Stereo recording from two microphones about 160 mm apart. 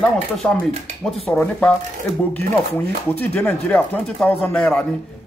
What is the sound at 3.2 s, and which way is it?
A man's voice, 10° left (ahead or behind).